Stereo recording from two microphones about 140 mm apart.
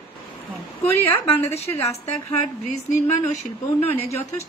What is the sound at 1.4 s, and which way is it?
Speech, 20° left (ahead or behind).